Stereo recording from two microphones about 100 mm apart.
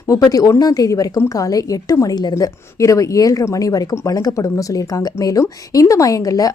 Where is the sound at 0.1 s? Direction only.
35° left (ahead or behind).